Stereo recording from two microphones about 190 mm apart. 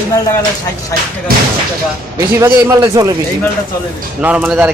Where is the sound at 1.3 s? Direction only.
50° right (ahead or behind).